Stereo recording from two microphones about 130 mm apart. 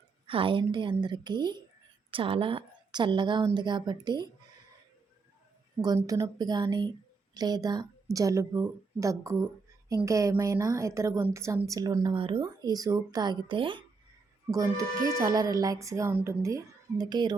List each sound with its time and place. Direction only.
0.3 s a woman's voice: 40° right (ahead or behind)
6.1 s a woman's voice: 30° right (ahead or behind)
12.1 s speech: 40° right (ahead or behind)
14.5 s a woman's voice: 25° right (ahead or behind)